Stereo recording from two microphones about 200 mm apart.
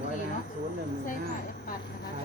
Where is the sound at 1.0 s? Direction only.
45° left (ahead or behind).